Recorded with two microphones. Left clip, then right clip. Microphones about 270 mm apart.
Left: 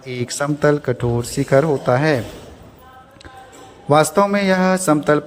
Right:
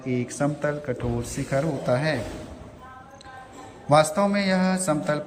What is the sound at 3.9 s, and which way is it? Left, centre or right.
Mantra, centre.